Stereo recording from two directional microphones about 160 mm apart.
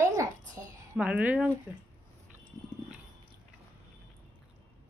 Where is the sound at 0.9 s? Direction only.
10° right (ahead or behind).